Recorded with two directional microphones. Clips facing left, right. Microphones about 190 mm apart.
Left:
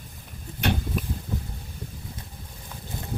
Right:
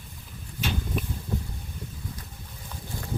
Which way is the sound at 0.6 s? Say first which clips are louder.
Left 5 dB; 65° left (ahead or behind).